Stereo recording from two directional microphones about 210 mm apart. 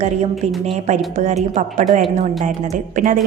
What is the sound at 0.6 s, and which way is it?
A woman's voice, 35° right (ahead or behind).